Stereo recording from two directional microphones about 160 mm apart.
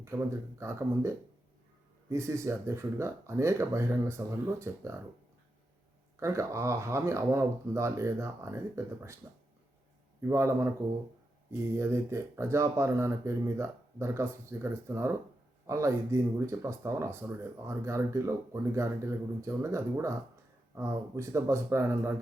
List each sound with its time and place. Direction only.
0.0 s speech: 15° right (ahead or behind)
6.1 s speech: 20° right (ahead or behind)
10.2 s speech: 20° right (ahead or behind)